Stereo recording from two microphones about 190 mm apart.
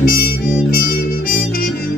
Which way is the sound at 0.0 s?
50° left (ahead or behind).